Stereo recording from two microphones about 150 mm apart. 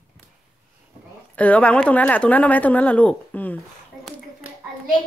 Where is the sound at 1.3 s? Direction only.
10° left (ahead or behind).